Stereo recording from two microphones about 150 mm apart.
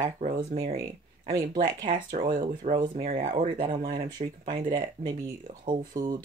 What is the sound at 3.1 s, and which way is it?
Speech, 55° right (ahead or behind).